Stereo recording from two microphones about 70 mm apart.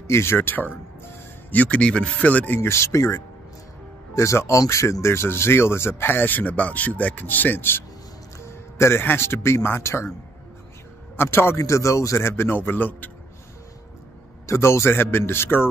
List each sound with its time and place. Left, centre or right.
0.1 s a man's voice: left
2.6 s speech: left
8.4 s a man's voice: left
11.1 s a man's voice: left
14.4 s a man's voice: left